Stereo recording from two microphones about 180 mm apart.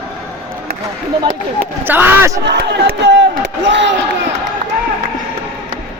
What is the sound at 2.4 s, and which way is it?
Crowd, 70° right (ahead or behind).